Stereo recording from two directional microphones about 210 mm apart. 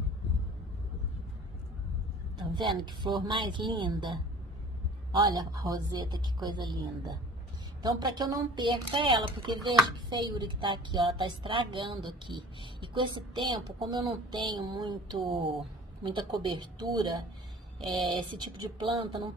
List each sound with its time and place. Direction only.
2.3 s a woman's voice: 20° right (ahead or behind)
5.7 s a woman's voice: 20° right (ahead or behind)